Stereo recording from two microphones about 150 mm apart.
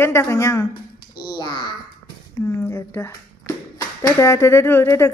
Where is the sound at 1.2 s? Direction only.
30° left (ahead or behind).